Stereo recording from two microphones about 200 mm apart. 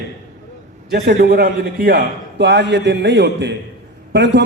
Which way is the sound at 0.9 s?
55° right (ahead or behind).